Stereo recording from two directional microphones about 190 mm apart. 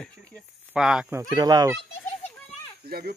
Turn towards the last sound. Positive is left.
turn(degrees=-55)  # may be behind; listen again after turning